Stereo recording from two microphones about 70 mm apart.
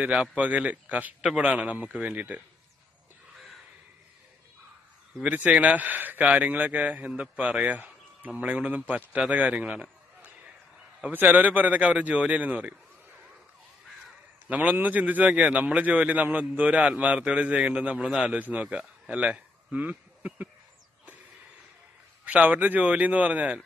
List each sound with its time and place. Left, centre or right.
0.0 s a man's voice: centre
1.2 s a man's voice: centre
5.2 s a man's voice: centre
9.3 s a sound: centre
11.0 s a man's voice: right
14.5 s a man's voice: right
18.0 s a man's voice: centre
18.3 s speech: centre
22.2 s a man's voice: right